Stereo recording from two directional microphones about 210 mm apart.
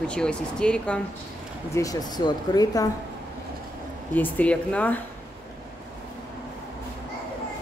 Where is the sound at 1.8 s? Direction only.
15° left (ahead or behind).